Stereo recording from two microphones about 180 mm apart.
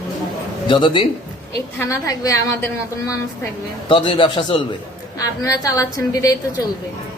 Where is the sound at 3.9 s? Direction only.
25° left (ahead or behind).